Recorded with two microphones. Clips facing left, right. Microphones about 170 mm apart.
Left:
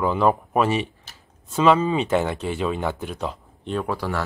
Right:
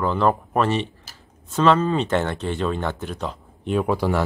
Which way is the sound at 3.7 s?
15° right (ahead or behind).